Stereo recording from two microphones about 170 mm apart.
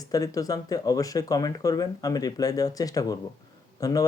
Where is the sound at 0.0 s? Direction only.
20° left (ahead or behind).